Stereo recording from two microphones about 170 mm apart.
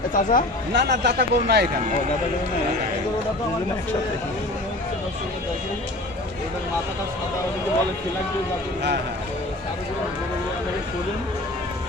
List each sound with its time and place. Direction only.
0.1 s speech: 50° left (ahead or behind)
0.7 s speech: 85° right